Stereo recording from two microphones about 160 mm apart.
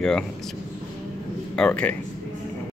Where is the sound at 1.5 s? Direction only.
5° left (ahead or behind).